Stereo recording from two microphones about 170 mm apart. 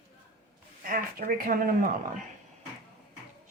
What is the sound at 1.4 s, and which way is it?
Speech, 55° right (ahead or behind).